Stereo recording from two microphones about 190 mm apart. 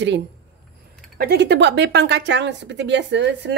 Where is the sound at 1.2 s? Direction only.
60° right (ahead or behind).